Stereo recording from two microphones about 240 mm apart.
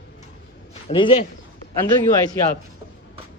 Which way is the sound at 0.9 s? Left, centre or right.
Left.